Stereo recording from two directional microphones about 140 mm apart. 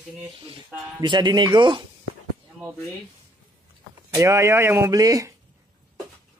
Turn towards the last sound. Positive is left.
turn(degrees=-25)  # may be behind; listen again after turning